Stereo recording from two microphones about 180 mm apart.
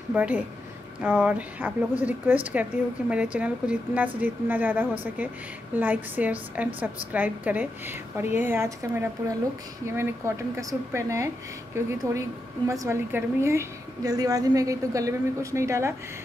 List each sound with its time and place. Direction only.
0.1 s a woman's voice: 10° right (ahead or behind)